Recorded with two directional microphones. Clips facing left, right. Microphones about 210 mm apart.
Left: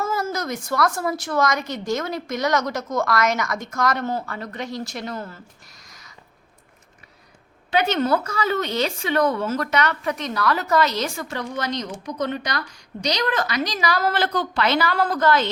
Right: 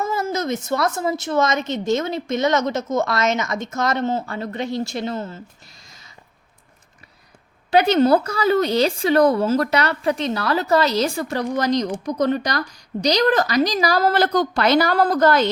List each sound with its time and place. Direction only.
0.0 s a woman's voice: 20° right (ahead or behind)
5.9 s a sound: 25° right (ahead or behind)
7.7 s speech: 35° right (ahead or behind)